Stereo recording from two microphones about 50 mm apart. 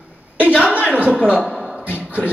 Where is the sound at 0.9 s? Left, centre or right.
Right.